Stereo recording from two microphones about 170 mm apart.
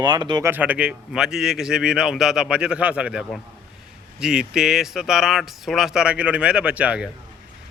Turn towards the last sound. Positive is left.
turn(degrees=-10)  # may be behind; listen again after turning